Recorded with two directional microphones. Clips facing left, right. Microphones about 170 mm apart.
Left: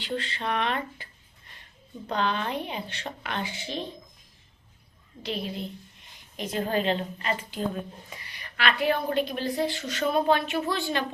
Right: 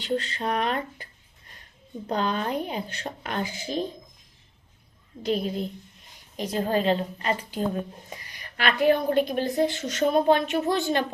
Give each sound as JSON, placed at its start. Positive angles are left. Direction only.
{"t": 0.0, "sound": "speech", "side_deg": -40}
{"t": 2.0, "sound": "speech", "side_deg": -40}
{"t": 5.2, "sound": "a woman's voice", "side_deg": -45}